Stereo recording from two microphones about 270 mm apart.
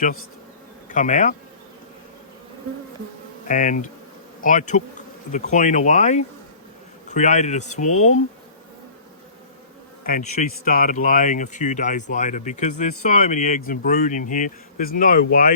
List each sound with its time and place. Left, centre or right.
0.9 s speech: left
3.4 s insect: left
4.4 s speech: left
10.0 s insect: left
10.7 s speech: left